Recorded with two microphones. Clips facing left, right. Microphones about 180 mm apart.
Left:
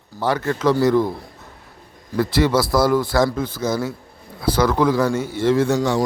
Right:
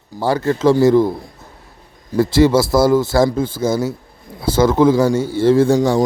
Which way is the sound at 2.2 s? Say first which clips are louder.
Right 5 dB; 25° right (ahead or behind).